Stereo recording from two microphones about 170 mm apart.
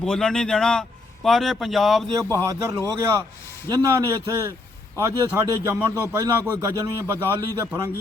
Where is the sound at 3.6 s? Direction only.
20° right (ahead or behind).